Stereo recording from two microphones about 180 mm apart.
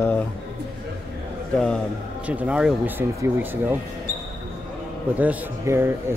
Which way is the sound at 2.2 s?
5° right (ahead or behind).